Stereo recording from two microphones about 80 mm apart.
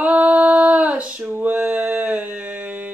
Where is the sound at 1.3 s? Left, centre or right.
Right.